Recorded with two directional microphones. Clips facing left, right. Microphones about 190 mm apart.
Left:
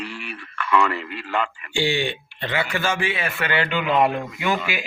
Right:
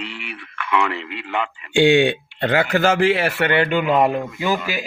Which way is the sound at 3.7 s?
45° right (ahead or behind).